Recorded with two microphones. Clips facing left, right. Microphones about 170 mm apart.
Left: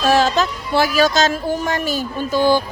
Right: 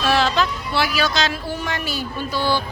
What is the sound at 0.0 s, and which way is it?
Speech, 40° left (ahead or behind).